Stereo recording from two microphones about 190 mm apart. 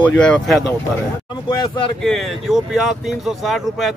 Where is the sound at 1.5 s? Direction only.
25° left (ahead or behind).